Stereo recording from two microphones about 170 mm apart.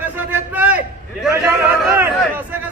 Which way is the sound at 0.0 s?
10° right (ahead or behind).